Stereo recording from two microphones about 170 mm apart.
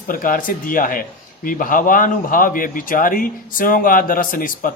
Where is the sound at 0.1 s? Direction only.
55° left (ahead or behind).